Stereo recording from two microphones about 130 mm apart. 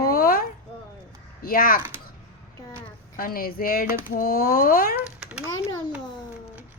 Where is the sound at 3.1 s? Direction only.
90° left.